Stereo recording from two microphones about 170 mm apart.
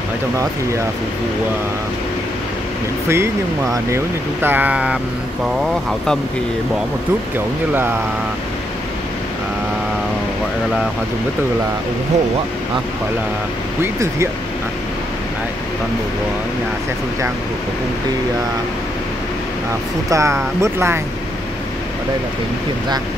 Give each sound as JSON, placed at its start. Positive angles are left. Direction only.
{"t": 3.1, "sound": "speech", "side_deg": -15}
{"t": 7.7, "sound": "speech", "side_deg": -10}
{"t": 13.9, "sound": "speech", "side_deg": -15}
{"t": 20.1, "sound": "speech", "side_deg": -15}